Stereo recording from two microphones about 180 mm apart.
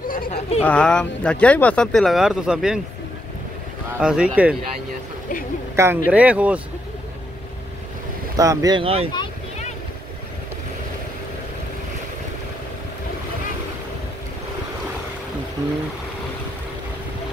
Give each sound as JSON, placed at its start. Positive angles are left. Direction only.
{"t": 0.1, "sound": "a sound", "side_deg": 40}
{"t": 0.6, "sound": "speech", "side_deg": 5}
{"t": 4.0, "sound": "speech", "side_deg": -5}
{"t": 5.8, "sound": "speech", "side_deg": -10}
{"t": 8.4, "sound": "speech", "side_deg": -20}